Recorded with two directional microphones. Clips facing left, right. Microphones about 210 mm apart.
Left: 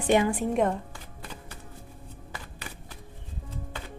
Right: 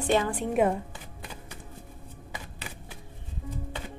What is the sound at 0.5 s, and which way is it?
Speech, 5° right (ahead or behind).